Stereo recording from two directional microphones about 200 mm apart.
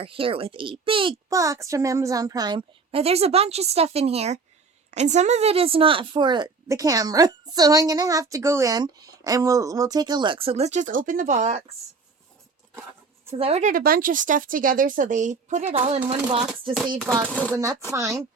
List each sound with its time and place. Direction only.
0.0 s speech: 25° right (ahead or behind)
13.3 s speech: 30° right (ahead or behind)
17.1 s speech: 15° right (ahead or behind)